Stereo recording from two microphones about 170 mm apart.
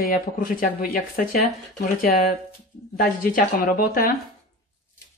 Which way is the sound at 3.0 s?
55° left (ahead or behind).